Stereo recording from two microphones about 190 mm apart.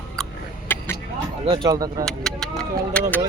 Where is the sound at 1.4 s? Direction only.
25° right (ahead or behind).